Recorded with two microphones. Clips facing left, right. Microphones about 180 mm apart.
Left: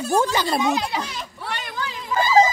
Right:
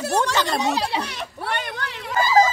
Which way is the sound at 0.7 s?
30° right (ahead or behind).